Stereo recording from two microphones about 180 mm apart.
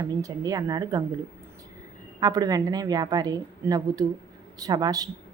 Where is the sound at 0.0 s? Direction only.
20° right (ahead or behind).